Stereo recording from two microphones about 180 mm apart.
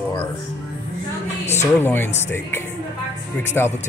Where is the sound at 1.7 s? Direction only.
10° left (ahead or behind).